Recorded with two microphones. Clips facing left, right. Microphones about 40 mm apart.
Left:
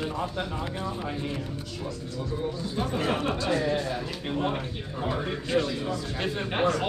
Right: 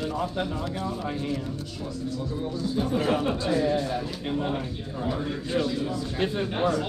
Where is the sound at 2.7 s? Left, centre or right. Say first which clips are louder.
Right 4 dB; centre.